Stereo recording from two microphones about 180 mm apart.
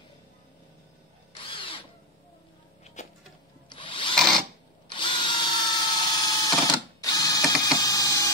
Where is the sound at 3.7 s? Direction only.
25° left (ahead or behind).